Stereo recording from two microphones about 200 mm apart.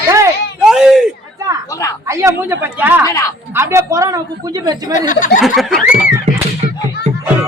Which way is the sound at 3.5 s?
10° right (ahead or behind).